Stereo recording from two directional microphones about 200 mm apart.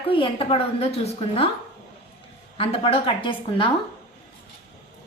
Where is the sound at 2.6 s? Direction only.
30° left (ahead or behind).